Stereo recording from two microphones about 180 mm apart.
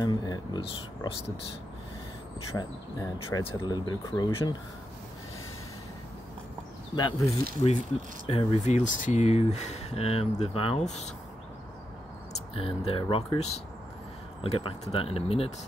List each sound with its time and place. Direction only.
0.0 s speech: 20° left (ahead or behind)
2.5 s speech: 20° left (ahead or behind)
7.0 s speech: 20° left (ahead or behind)
8.3 s speech: 30° left (ahead or behind)
12.3 s speech: 30° left (ahead or behind)